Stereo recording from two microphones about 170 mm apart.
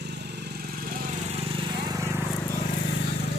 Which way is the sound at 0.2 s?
80° right.